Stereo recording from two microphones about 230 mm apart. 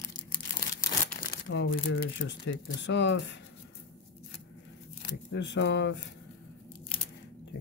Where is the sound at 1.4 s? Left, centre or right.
Left.